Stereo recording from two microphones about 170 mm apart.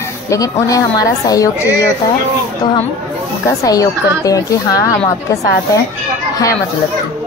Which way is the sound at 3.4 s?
20° left (ahead or behind).